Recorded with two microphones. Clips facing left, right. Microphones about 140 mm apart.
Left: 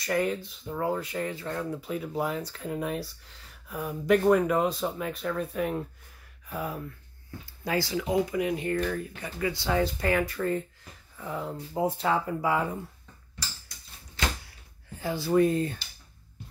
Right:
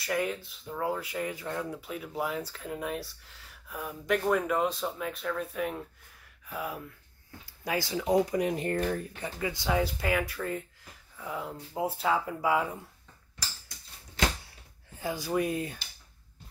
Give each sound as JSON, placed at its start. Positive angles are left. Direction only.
{"t": 0.0, "sound": "speech", "side_deg": -5}
{"t": 7.6, "sound": "speech", "side_deg": -20}
{"t": 8.1, "sound": "speech", "side_deg": -40}
{"t": 9.4, "sound": "speech", "side_deg": -20}
{"t": 9.8, "sound": "speech", "side_deg": -5}
{"t": 15.0, "sound": "speech", "side_deg": -15}